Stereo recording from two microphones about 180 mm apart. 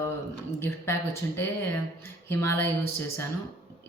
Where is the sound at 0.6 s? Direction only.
15° left (ahead or behind).